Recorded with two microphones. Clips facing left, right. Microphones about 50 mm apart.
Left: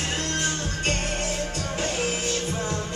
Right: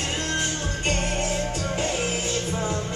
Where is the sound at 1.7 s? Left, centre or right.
Right.